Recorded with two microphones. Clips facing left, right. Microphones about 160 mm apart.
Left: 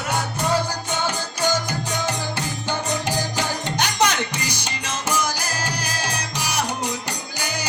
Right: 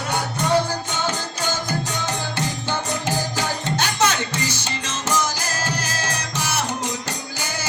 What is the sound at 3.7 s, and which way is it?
Music, 15° left (ahead or behind).